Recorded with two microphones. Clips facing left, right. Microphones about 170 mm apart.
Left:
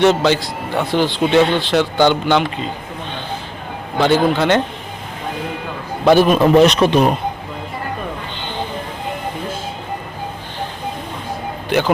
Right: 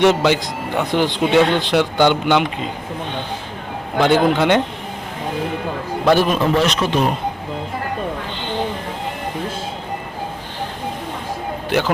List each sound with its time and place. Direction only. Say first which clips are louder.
0.0 s speech: left 1 dB; 10° right (ahead or behind)
4.0 s speech: even; 15° right (ahead or behind)
6.1 s a man's voice: left 4 dB; 10° left (ahead or behind)